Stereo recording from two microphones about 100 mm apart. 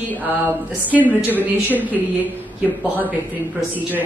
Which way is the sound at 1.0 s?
15° left (ahead or behind).